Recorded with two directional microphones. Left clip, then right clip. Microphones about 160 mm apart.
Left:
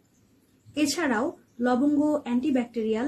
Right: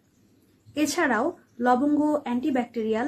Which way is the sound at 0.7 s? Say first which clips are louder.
Right 2 dB; 15° left (ahead or behind).